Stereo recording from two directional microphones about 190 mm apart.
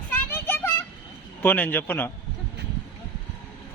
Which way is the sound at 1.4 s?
10° left (ahead or behind).